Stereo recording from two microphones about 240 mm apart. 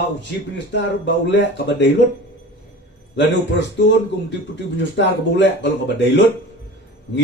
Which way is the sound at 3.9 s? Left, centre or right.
Left.